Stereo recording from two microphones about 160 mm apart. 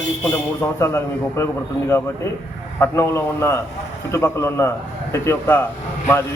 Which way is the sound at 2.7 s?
15° left (ahead or behind).